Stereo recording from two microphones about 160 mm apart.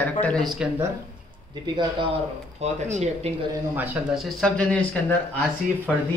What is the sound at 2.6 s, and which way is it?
Speech, 45° right (ahead or behind).